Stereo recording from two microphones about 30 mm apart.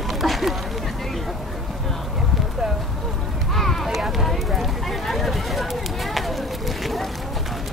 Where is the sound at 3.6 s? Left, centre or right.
Centre.